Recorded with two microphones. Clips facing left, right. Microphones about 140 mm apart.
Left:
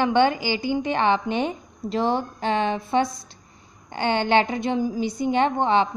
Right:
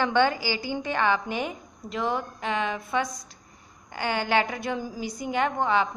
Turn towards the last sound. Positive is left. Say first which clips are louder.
# left 4 dB
turn(degrees=25)  # may be behind; listen again after turning